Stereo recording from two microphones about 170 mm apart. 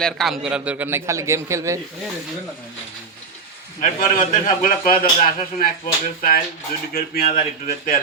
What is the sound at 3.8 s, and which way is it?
A man's voice, 50° left (ahead or behind).